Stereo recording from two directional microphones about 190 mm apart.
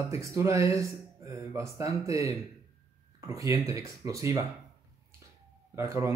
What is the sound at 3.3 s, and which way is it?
Speech, 15° right (ahead or behind).